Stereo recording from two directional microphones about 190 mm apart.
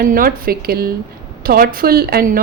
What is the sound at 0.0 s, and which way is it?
A woman's voice, 50° right (ahead or behind).